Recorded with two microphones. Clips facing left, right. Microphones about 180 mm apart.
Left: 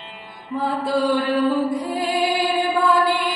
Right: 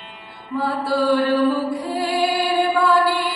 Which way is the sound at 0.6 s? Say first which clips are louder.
Even; 20° left (ahead or behind).